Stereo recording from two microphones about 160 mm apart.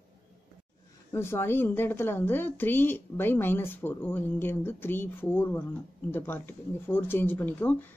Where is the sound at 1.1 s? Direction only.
15° left (ahead or behind).